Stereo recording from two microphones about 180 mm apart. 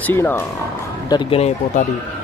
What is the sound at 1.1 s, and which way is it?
Speech, 30° left (ahead or behind).